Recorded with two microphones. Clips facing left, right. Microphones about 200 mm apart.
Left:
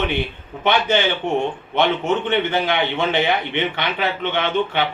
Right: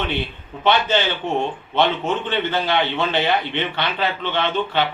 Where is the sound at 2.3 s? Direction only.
15° left (ahead or behind).